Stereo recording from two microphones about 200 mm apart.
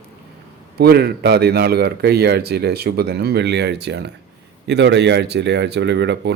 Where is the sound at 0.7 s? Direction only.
55° right (ahead or behind).